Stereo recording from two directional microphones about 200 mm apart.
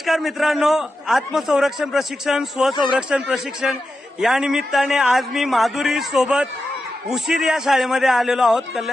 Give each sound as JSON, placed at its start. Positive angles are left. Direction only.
{"t": 0.0, "sound": "a man's voice", "side_deg": 0}